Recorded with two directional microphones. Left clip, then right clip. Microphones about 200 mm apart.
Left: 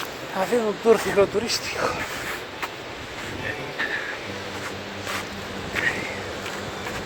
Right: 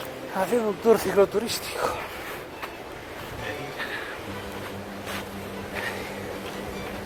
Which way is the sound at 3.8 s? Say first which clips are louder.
Left 7 dB; 5° right (ahead or behind).